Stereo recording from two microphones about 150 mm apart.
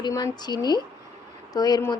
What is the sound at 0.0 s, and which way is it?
A woman's voice, 25° left (ahead or behind).